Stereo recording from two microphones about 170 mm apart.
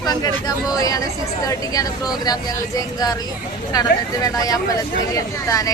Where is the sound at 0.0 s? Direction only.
20° left (ahead or behind).